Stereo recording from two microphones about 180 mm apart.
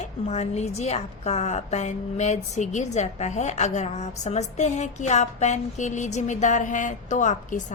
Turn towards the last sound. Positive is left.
turn(degrees=40)  # may be behind; listen again after turning